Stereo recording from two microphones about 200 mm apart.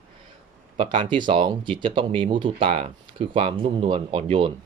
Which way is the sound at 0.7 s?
25° right (ahead or behind).